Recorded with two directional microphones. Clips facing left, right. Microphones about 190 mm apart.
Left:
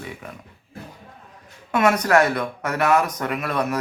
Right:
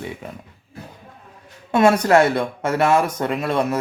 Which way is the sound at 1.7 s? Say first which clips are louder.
Right 3 dB; 30° right (ahead or behind).